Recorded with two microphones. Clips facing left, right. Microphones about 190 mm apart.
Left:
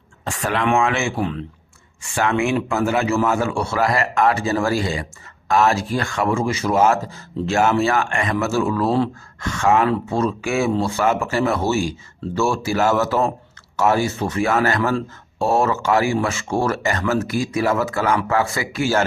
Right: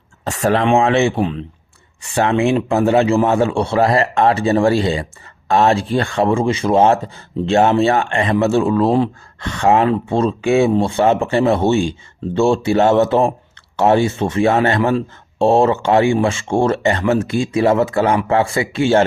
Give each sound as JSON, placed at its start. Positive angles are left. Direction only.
{"t": 0.3, "sound": "a man's voice", "side_deg": -40}
{"t": 1.2, "sound": "speech", "side_deg": -20}
{"t": 2.0, "sound": "a man's voice", "side_deg": -35}